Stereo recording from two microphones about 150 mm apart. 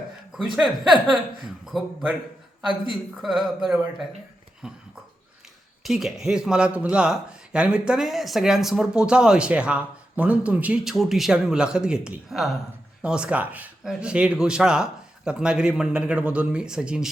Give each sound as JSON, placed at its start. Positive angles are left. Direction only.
{"t": 0.5, "sound": "speech", "side_deg": 0}
{"t": 3.2, "sound": "speech", "side_deg": 0}
{"t": 5.8, "sound": "speech", "side_deg": 0}